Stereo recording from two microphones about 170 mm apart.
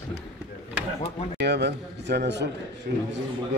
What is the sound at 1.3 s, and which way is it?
Speech, 85° right.